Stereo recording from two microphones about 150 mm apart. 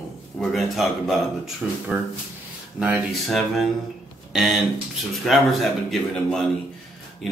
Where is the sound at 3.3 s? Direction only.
Centre (ahead or behind).